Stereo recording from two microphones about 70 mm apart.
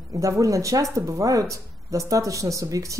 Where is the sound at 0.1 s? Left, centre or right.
Right.